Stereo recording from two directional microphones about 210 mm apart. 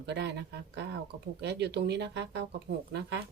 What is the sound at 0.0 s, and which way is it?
Speech, 55° right (ahead or behind).